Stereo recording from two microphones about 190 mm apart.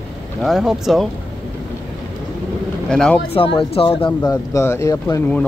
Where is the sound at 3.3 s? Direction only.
30° left (ahead or behind).